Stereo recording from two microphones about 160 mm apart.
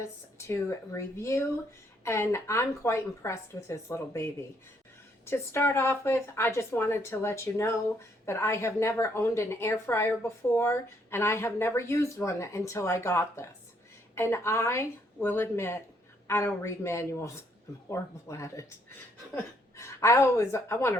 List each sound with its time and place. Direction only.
0.0 s speech: 15° left (ahead or behind)